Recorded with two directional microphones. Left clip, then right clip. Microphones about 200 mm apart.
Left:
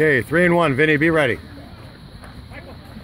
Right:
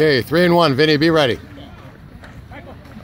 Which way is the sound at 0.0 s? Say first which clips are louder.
Right 1 dB; 15° right (ahead or behind).